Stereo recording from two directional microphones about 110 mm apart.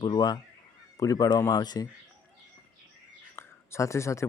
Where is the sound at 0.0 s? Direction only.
40° left (ahead or behind).